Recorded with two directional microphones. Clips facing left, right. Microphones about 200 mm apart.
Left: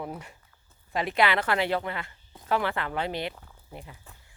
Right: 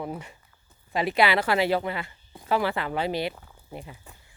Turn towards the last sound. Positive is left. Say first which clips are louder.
# right 4 dB
turn(degrees=-15)  # may be behind; listen again after turning